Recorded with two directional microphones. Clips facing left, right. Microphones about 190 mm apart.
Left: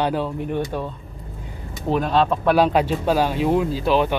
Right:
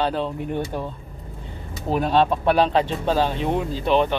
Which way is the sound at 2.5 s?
10° left (ahead or behind).